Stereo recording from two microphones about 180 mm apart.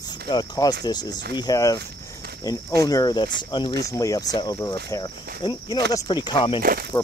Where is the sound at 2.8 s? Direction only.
20° left (ahead or behind).